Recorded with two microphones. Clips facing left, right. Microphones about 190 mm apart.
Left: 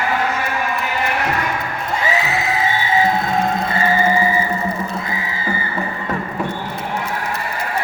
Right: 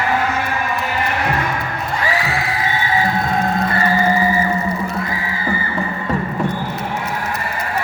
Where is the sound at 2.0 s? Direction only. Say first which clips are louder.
Left 1 dB; 20° left (ahead or behind).